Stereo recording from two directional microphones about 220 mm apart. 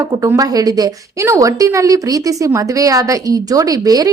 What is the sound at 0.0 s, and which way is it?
A woman's voice, 15° right (ahead or behind).